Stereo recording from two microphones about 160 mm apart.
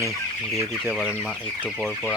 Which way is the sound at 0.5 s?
15° right (ahead or behind).